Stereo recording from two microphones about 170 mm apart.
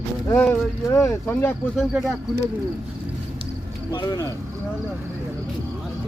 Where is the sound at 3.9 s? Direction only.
25° left (ahead or behind).